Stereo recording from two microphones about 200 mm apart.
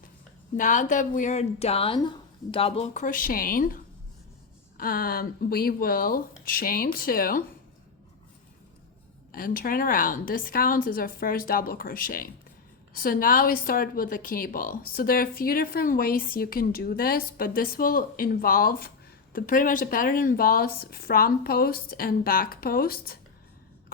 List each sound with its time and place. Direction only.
0.5 s speech: 40° left (ahead or behind)
4.8 s a woman's voice: 45° left (ahead or behind)
9.3 s a woman's voice: 45° left (ahead or behind)